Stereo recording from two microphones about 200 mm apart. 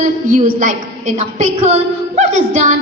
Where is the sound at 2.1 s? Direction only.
35° right (ahead or behind).